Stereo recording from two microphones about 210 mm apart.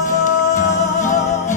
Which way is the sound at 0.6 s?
35° left (ahead or behind).